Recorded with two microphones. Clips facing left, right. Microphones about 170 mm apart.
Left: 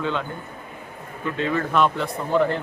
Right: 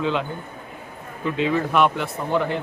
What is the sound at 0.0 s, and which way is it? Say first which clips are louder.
Speech: right 3 dB; 15° right (ahead or behind).